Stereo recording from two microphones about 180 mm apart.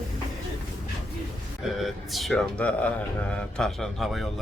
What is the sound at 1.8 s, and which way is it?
Speech, centre (ahead or behind).